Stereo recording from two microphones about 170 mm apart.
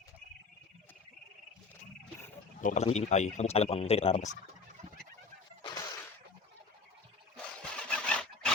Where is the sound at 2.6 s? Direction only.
40° left (ahead or behind).